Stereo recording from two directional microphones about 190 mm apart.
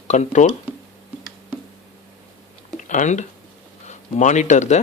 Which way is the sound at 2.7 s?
40° left (ahead or behind).